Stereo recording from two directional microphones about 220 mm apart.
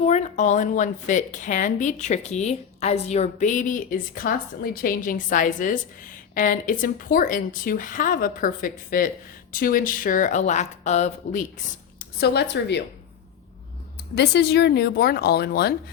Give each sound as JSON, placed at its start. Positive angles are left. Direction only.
{"t": 0.0, "sound": "speech", "side_deg": 30}
{"t": 14.2, "sound": "a woman's voice", "side_deg": 50}